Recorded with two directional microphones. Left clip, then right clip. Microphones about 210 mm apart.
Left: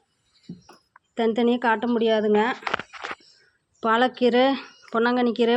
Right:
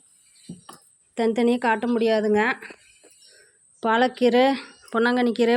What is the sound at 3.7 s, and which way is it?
Speech, 10° right (ahead or behind).